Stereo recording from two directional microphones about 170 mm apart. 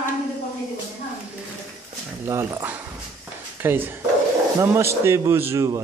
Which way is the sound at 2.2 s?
15° right (ahead or behind).